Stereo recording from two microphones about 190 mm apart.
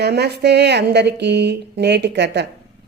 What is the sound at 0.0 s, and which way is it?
A woman's voice, 60° right (ahead or behind).